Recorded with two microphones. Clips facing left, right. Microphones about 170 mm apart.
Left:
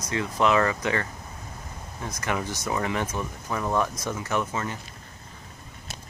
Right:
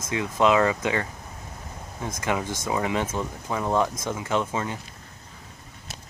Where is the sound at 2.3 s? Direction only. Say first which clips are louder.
Right 2 dB; 20° right (ahead or behind).